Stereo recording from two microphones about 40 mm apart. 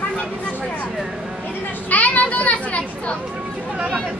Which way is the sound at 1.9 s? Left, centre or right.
Left.